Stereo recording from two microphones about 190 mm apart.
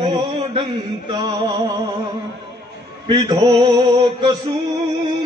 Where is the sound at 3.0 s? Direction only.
25° right (ahead or behind).